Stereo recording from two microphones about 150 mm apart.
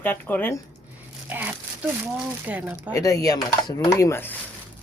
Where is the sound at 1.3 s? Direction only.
10° right (ahead or behind).